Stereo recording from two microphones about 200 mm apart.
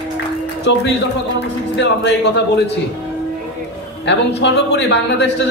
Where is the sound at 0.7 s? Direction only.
60° left (ahead or behind).